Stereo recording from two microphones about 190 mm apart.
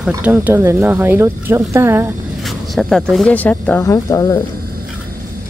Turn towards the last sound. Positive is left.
turn(degrees=20)  # may be behind; listen again after turning